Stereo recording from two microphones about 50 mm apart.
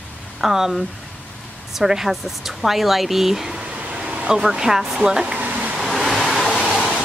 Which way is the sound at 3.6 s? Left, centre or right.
Right.